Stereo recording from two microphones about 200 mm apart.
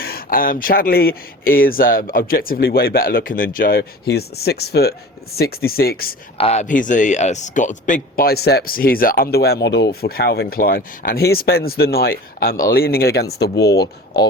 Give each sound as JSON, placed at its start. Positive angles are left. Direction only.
{"t": 0.0, "sound": "speech", "side_deg": 45}
{"t": 6.3, "sound": "speech", "side_deg": 30}